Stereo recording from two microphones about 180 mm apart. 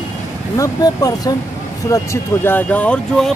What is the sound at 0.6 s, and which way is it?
Speech, 20° left (ahead or behind).